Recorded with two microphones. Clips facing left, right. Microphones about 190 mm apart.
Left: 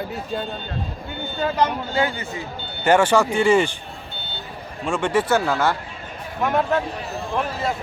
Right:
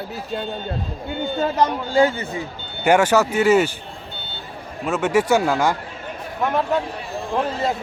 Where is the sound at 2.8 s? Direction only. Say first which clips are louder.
Right 1 dB; 10° right (ahead or behind).